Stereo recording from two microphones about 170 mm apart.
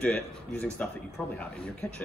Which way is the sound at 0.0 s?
10° left (ahead or behind).